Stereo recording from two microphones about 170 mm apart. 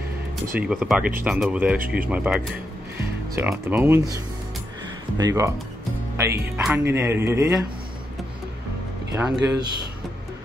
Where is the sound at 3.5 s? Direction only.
5° right (ahead or behind).